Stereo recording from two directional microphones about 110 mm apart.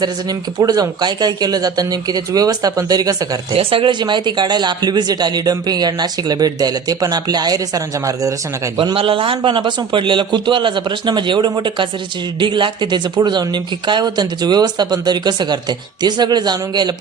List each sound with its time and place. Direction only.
0.0 s speech: 35° right (ahead or behind)
3.5 s speech: 55° right (ahead or behind); by 8.3 s 30° right (ahead or behind)
8.8 s a man's voice: 50° right (ahead or behind)